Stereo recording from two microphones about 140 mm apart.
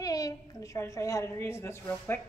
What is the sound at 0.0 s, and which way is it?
A woman's voice, 25° left (ahead or behind).